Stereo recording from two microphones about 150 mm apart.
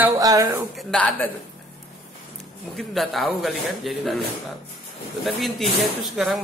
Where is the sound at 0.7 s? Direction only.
5° left (ahead or behind).